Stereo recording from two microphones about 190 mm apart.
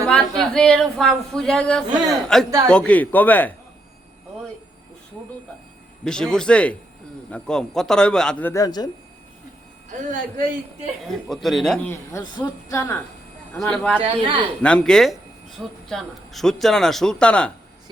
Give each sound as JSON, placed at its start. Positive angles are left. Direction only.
{"t": 0.1, "sound": "speech", "side_deg": 5}
{"t": 6.1, "sound": "speech", "side_deg": 5}
{"t": 10.0, "sound": "a man's voice", "side_deg": -45}
{"t": 11.1, "sound": "speech", "side_deg": 0}
{"t": 11.9, "sound": "speech", "side_deg": 15}
{"t": 14.0, "sound": "speech", "side_deg": -30}
{"t": 14.6, "sound": "speech", "side_deg": 5}